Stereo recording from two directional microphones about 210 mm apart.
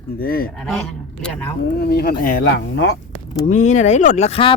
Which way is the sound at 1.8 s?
50° left (ahead or behind).